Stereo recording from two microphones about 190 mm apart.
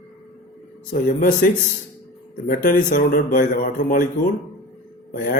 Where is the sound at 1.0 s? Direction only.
45° left (ahead or behind).